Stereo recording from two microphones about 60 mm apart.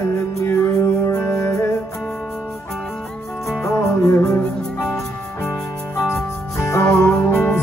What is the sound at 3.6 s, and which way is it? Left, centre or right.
Music, left.